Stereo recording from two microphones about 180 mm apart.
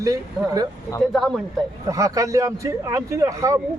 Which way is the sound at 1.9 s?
20° right (ahead or behind).